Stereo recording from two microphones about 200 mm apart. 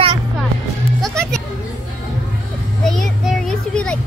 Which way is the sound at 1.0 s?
5° left (ahead or behind).